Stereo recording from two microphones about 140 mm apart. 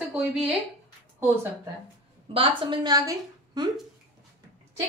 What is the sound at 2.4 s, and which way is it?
A woman's voice, 40° right (ahead or behind).